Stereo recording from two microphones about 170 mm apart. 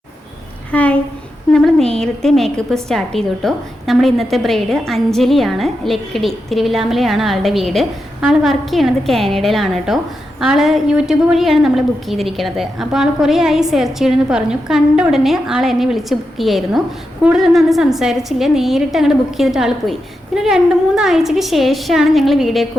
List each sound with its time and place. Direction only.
0.7 s a woman's voice: 10° left (ahead or behind)